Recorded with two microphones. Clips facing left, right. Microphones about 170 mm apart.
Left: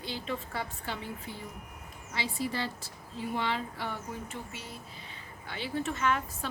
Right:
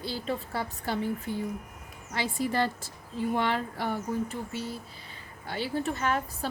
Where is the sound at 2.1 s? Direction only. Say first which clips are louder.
Right 5 dB; 50° right (ahead or behind).